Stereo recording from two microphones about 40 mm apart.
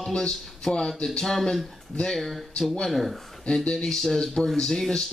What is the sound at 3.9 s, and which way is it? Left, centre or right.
Speech, centre.